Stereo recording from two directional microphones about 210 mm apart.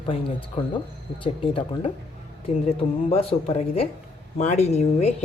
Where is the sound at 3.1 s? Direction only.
25° left (ahead or behind).